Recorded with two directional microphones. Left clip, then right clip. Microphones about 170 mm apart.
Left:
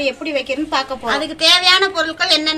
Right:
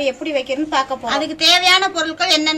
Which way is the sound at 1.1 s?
40° left (ahead or behind).